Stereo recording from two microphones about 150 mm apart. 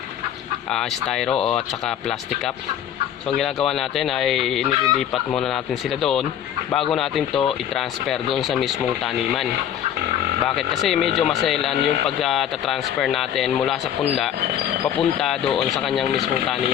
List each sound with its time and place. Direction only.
0.7 s speech: 5° left (ahead or behind)
14.9 s speech: centre (ahead or behind)